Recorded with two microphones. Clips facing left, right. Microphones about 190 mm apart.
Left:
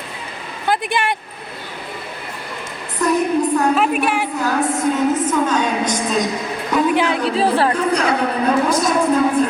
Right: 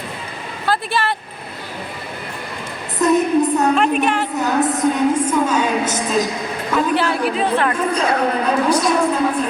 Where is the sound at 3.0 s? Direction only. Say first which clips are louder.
Right 2 dB; 20° right (ahead or behind).